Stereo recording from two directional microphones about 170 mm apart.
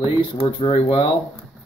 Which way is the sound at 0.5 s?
30° left (ahead or behind).